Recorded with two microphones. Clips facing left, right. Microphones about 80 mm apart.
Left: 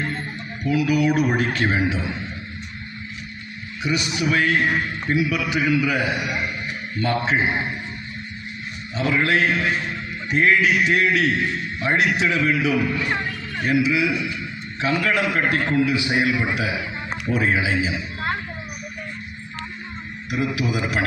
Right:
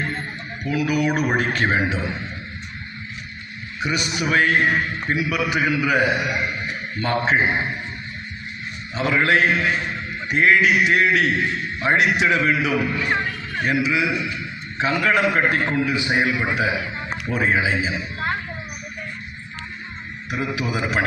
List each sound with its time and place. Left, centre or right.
0.6 s a man's voice: centre
1.5 s a man's voice: centre
3.8 s a man's voice: right
4.0 s a man's voice: centre
9.2 s a man's voice: centre
13.1 s speech: centre
13.7 s a man's voice: centre
17.2 s speech: centre
17.5 s a man's voice: centre
17.8 s a sound: centre
20.7 s a man's voice: centre